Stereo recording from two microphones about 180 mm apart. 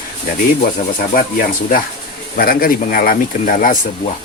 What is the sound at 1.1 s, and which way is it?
Speech, 50° left (ahead or behind).